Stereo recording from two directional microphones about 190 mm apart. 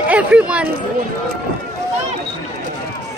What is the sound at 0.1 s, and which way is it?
Speech, 5° right (ahead or behind).